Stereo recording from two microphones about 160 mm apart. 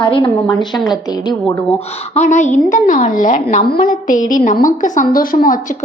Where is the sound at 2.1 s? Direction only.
45° left (ahead or behind).